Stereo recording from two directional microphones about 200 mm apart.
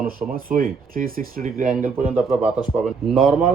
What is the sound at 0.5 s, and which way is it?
Speech, 45° right (ahead or behind).